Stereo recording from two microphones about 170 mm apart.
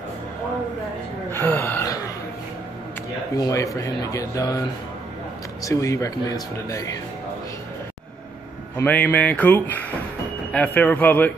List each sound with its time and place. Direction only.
1.3 s gasp: 10° left (ahead or behind)
3.3 s speech: 20° left (ahead or behind)
8.7 s speech: 10° left (ahead or behind)